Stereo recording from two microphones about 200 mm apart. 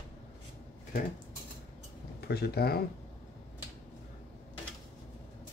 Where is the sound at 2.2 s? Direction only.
50° left (ahead or behind).